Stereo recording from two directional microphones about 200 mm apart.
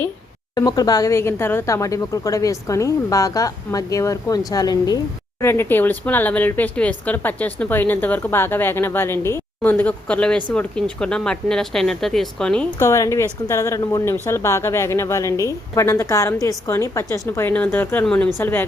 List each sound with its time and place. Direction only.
0.5 s speech: 20° left (ahead or behind); by 12.6 s 5° left (ahead or behind)
12.8 s speech: 15° left (ahead or behind)